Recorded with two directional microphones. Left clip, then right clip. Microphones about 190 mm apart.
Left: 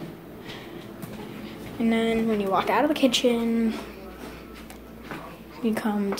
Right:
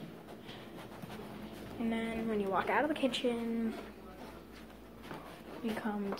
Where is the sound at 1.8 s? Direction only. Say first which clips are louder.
Left 14 dB; 20° left (ahead or behind).